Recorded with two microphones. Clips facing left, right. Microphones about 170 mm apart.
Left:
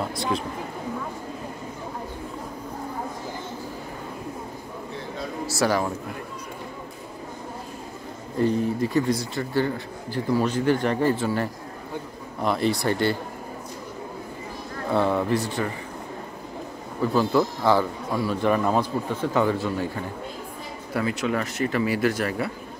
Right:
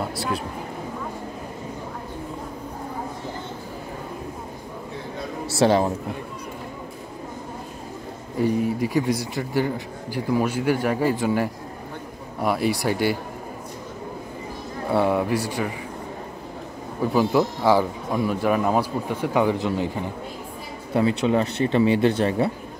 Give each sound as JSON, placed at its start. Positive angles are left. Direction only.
{"t": 5.6, "sound": "speech", "side_deg": -25}
{"t": 8.4, "sound": "speech", "side_deg": -10}
{"t": 14.9, "sound": "speech", "side_deg": -10}
{"t": 17.0, "sound": "speech", "side_deg": -15}
{"t": 20.9, "sound": "speech", "side_deg": -30}